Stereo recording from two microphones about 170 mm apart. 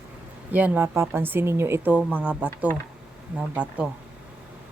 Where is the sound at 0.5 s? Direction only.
10° right (ahead or behind).